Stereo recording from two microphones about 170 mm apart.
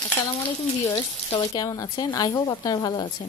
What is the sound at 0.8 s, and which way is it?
A woman's voice, 25° left (ahead or behind).